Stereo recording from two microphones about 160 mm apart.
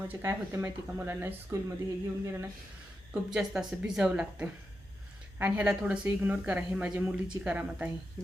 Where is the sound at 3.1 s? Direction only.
5° right (ahead or behind).